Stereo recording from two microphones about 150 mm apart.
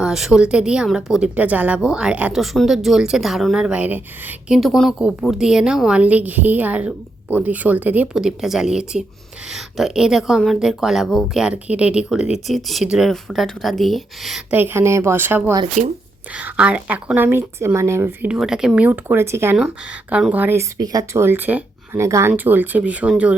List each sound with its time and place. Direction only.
0.0 s speech: 5° right (ahead or behind)
14.5 s speech: 15° right (ahead or behind)
15.8 s speech: 50° right (ahead or behind)
16.3 s speech: 10° right (ahead or behind)
18.3 s speech: 5° right (ahead or behind)
20.7 s speech: 25° right (ahead or behind); by 23.4 s 10° right (ahead or behind)